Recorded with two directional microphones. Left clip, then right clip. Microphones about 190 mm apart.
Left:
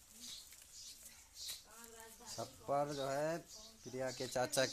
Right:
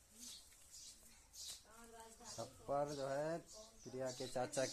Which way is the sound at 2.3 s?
35° left (ahead or behind).